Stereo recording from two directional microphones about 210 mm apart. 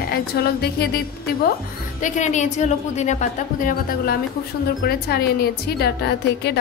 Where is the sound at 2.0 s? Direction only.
35° left (ahead or behind).